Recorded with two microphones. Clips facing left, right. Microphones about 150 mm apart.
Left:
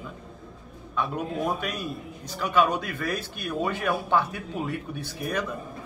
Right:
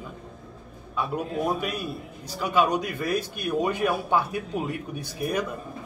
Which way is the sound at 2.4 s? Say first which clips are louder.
Even; 10° right (ahead or behind).